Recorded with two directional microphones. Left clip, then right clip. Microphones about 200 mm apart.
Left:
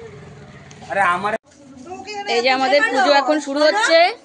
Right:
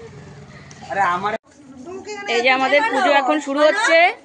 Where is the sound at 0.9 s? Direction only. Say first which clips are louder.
Left 1 dB; 20° left (ahead or behind).